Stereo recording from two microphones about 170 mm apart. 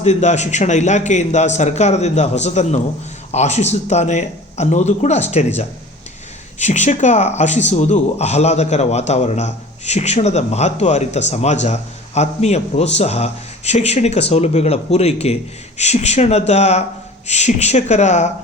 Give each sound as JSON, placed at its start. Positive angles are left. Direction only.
{"t": 0.0, "sound": "a man's voice", "side_deg": 40}
{"t": 6.6, "sound": "a man's voice", "side_deg": 45}